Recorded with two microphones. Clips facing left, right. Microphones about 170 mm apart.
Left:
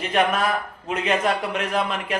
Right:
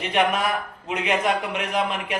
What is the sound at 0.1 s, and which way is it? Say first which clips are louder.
Speech: left 1 dB; 15° right (ahead or behind).